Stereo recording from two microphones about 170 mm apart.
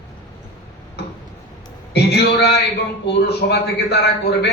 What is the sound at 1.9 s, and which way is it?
A man's voice, 75° left (ahead or behind).